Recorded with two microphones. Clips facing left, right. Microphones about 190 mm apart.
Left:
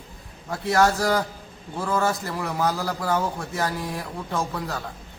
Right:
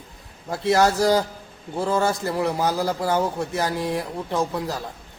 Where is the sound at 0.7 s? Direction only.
25° right (ahead or behind).